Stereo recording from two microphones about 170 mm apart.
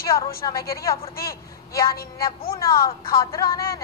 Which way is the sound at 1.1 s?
60° left (ahead or behind).